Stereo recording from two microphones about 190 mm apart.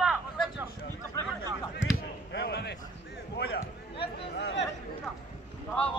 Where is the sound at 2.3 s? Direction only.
60° left (ahead or behind).